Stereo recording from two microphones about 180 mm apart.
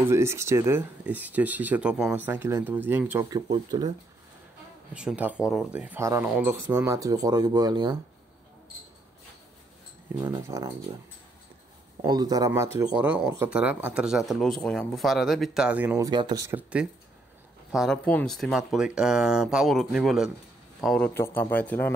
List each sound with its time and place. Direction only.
0.1 s speech: 15° right (ahead or behind)
4.9 s speech: 5° right (ahead or behind); by 8.0 s 25° right (ahead or behind)
10.2 s speech: 20° right (ahead or behind)
12.0 s speech: 20° right (ahead or behind)
16.1 s speech: 25° right (ahead or behind)
17.6 s speech: centre (ahead or behind)
21.1 s a man's voice: 10° left (ahead or behind)